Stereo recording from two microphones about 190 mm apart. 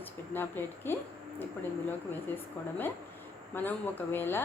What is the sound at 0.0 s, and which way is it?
Speech, 10° left (ahead or behind).